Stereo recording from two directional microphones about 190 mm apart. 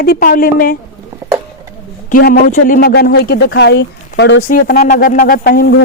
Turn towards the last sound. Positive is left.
turn(degrees=55)  # may be behind; listen again after turning